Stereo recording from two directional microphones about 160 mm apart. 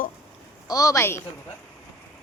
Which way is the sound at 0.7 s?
20° left (ahead or behind).